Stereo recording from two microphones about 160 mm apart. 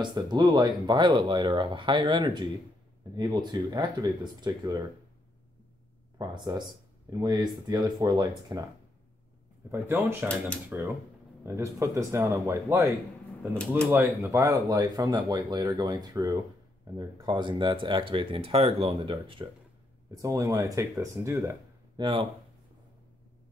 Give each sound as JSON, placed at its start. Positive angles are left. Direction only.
{"t": 0.0, "sound": "speech", "side_deg": -25}
{"t": 6.1, "sound": "speech", "side_deg": -25}
{"t": 9.7, "sound": "speech", "side_deg": -15}
{"t": 13.8, "sound": "speech", "side_deg": -15}
{"t": 20.2, "sound": "speech", "side_deg": -20}
{"t": 21.9, "sound": "speech", "side_deg": -30}